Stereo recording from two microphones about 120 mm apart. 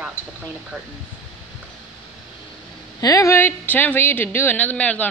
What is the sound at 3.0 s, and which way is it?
Speech, 25° left (ahead or behind).